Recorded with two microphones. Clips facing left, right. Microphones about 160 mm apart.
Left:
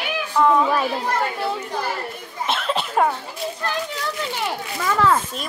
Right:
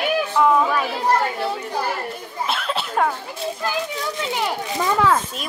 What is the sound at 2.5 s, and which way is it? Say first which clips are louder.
Cough: left 3 dB; centre (ahead or behind).